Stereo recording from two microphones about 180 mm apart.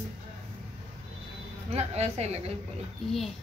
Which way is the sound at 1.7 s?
35° right (ahead or behind).